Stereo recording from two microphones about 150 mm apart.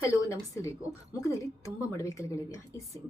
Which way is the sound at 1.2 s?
20° left (ahead or behind).